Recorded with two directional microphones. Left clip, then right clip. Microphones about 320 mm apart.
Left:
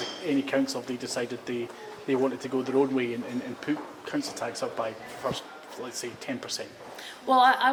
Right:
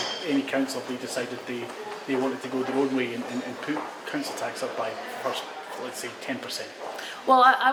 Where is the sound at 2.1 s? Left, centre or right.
Left.